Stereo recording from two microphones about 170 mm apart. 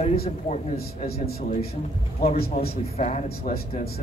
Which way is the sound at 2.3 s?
65° left (ahead or behind).